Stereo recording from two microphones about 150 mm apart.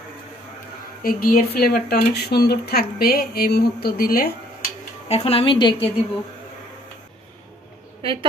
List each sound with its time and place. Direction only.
1.0 s speech: 75° left (ahead or behind)
5.0 s a woman's voice: 45° left (ahead or behind)
8.0 s a woman's voice: 35° right (ahead or behind)